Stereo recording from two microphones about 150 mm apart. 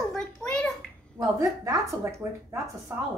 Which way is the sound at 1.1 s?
20° right (ahead or behind).